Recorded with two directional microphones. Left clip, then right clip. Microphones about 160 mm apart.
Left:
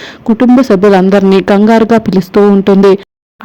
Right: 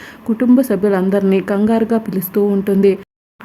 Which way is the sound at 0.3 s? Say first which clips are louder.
Left 7 dB; 30° left (ahead or behind).